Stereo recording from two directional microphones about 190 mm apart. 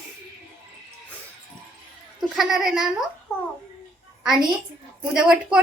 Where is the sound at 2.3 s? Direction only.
Centre (ahead or behind).